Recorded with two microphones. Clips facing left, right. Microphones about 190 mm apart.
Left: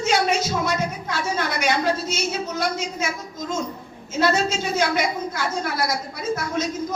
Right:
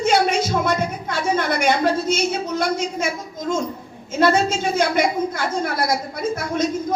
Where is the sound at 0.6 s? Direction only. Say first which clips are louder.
Right 3 dB; 55° right (ahead or behind).